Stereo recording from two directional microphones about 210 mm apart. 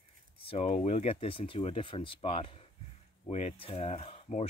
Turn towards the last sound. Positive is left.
turn(degrees=30)  # may be behind; listen again after turning